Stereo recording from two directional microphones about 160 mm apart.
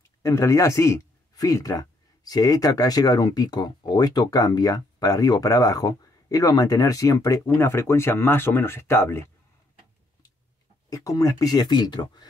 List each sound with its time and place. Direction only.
0.2 s speech: 20° left (ahead or behind)
10.9 s speech: 20° left (ahead or behind)